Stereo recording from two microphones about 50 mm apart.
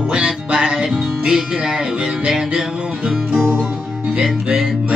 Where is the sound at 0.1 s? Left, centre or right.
Centre.